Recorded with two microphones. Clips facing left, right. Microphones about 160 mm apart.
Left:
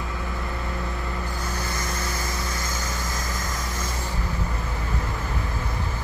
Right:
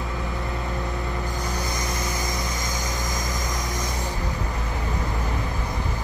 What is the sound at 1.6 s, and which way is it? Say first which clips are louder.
Vehicle: right 2 dB; 15° right (ahead or behind).